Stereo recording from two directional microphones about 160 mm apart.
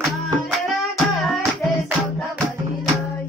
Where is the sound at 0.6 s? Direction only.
Centre (ahead or behind).